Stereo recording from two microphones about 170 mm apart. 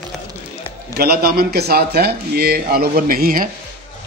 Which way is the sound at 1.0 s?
65° right (ahead or behind).